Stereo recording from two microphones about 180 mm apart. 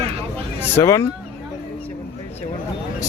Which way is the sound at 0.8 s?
15° left (ahead or behind).